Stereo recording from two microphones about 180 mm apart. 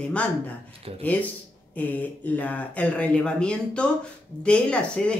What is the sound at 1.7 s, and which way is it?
A woman's voice, 10° left (ahead or behind).